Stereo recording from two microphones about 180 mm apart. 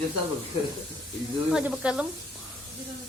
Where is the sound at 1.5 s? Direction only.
5° right (ahead or behind).